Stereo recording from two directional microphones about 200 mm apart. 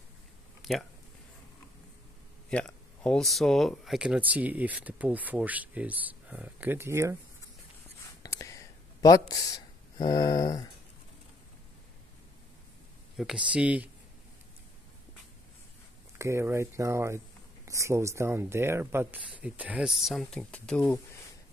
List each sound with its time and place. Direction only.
0.6 s a sound: centre (ahead or behind)
2.5 s speech: 5° left (ahead or behind); by 7.2 s 15° right (ahead or behind)
8.2 s whispering: 15° left (ahead or behind)
10.0 s a sound: 20° left (ahead or behind)
13.2 s speech: 5° right (ahead or behind)
16.2 s speech: 15° right (ahead or behind); by 21.0 s 5° left (ahead or behind)